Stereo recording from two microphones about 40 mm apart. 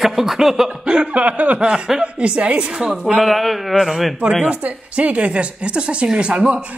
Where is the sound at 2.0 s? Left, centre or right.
Right.